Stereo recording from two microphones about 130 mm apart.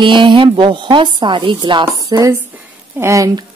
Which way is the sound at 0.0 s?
40° right (ahead or behind).